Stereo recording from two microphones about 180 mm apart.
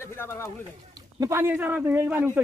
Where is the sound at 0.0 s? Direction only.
15° left (ahead or behind).